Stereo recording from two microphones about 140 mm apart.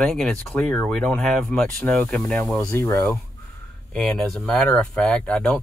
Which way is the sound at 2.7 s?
20° left (ahead or behind).